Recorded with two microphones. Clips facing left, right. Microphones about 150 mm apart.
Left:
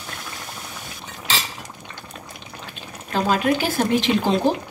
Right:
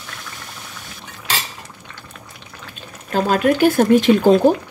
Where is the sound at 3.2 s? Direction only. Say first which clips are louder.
Right 6 dB; 50° right (ahead or behind).